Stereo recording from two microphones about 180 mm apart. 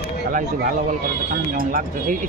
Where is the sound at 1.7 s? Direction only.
50° right (ahead or behind).